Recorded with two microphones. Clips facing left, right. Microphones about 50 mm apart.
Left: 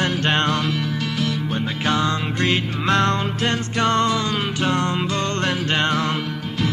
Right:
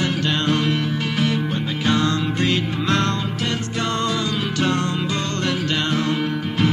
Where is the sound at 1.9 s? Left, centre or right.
Left.